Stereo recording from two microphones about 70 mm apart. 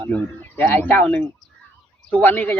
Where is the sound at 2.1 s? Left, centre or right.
Left.